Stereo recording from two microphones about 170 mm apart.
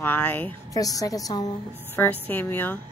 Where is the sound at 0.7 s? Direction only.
20° left (ahead or behind).